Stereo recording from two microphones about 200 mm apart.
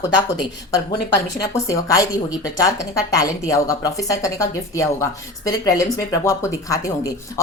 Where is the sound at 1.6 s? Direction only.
15° left (ahead or behind).